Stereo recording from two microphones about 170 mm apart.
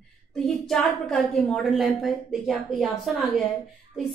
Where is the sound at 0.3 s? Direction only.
Centre (ahead or behind).